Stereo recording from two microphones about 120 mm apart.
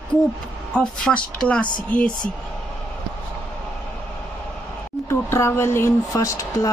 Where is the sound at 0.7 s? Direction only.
10° left (ahead or behind).